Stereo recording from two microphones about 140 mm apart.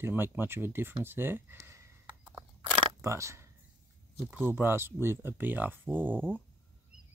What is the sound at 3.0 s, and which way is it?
Speech, 20° right (ahead or behind).